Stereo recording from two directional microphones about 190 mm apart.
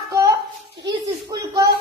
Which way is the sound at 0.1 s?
15° right (ahead or behind).